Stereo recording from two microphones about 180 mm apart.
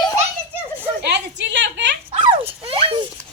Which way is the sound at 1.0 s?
75° right (ahead or behind).